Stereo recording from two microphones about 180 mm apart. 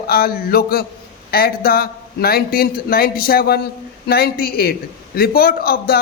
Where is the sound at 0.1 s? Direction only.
55° left (ahead or behind).